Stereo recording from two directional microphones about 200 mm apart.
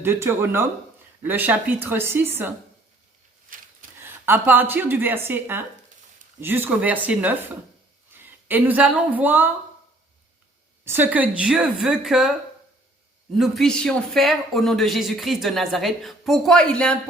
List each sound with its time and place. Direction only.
0.0 s a woman's voice: 10° right (ahead or behind)
3.5 s a sound: 40° right (ahead or behind)
4.0 s a woman's voice: 10° right (ahead or behind)
10.8 s speech: 10° right (ahead or behind)
13.3 s speech: centre (ahead or behind)